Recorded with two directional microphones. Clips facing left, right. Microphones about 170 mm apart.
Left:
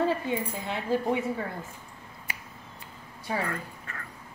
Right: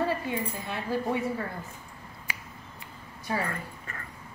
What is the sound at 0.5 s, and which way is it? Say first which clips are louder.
Speech: left 3 dB; 20° left (ahead or behind).